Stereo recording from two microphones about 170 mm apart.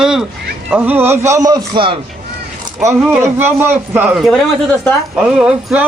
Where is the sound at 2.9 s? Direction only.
10° right (ahead or behind).